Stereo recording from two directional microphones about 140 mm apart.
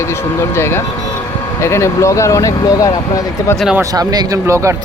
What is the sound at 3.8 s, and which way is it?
Speech, 30° right (ahead or behind).